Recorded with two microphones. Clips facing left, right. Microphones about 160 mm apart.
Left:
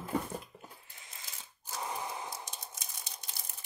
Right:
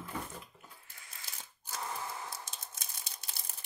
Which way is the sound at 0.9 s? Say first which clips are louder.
Even; 20° left (ahead or behind).